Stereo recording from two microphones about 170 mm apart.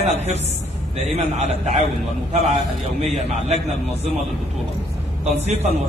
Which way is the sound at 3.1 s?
40° right (ahead or behind).